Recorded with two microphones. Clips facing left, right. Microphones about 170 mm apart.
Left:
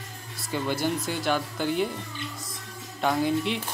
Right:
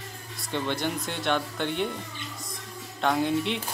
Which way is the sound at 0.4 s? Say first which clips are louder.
Left 1 dB; 5° left (ahead or behind).